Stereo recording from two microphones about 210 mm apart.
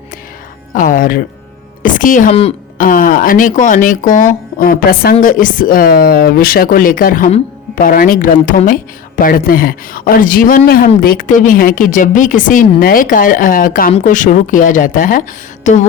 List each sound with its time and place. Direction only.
0.7 s speech: 40° left (ahead or behind)